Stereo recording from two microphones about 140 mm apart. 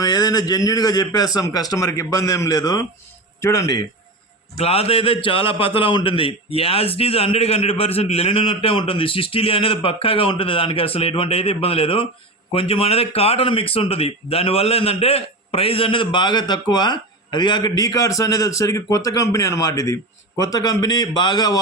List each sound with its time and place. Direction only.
0.0 s a man's voice: 30° left (ahead or behind)
4.5 s a man's voice: 45° left (ahead or behind); by 21.6 s 30° left (ahead or behind)